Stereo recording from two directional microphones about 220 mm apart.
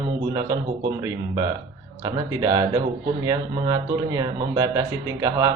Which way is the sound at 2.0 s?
15° right (ahead or behind).